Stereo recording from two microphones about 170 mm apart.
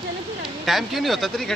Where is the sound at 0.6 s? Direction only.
Centre (ahead or behind).